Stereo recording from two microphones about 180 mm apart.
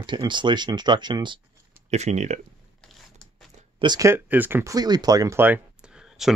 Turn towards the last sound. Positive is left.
turn(degrees=0)  # may be behind; listen again after turning